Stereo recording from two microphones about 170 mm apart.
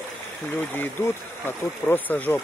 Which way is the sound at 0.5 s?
10° left (ahead or behind).